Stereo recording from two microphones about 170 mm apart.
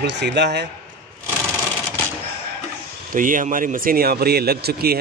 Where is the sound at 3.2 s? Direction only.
50° right (ahead or behind); by 4.9 s 65° right (ahead or behind).